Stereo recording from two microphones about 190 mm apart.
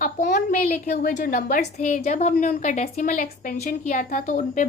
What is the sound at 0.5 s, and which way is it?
A woman's voice, 40° left (ahead or behind).